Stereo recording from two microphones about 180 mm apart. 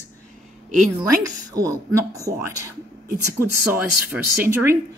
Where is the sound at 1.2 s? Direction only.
20° right (ahead or behind).